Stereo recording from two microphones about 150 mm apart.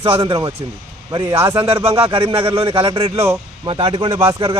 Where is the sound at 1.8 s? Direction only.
40° right (ahead or behind).